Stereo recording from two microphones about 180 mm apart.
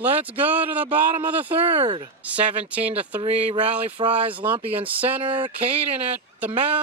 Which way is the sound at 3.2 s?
30° right (ahead or behind).